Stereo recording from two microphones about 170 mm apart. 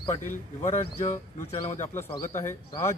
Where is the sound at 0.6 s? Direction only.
40° left (ahead or behind).